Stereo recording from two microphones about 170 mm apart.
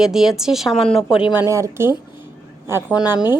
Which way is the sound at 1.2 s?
10° right (ahead or behind).